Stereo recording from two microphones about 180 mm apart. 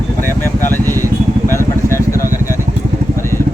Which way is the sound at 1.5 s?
15° left (ahead or behind).